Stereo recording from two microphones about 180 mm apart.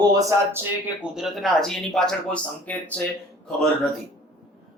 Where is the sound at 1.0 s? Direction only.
Centre (ahead or behind).